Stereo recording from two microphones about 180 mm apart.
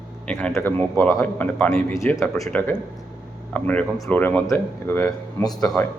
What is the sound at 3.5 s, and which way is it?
A man's voice, 10° left (ahead or behind).